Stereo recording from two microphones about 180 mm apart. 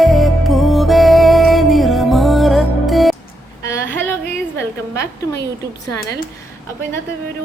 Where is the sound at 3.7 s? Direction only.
10° left (ahead or behind).